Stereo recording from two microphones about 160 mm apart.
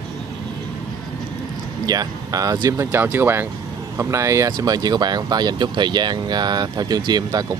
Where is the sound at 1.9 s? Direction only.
20° right (ahead or behind).